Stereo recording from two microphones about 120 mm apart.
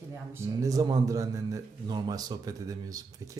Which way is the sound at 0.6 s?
30° right (ahead or behind).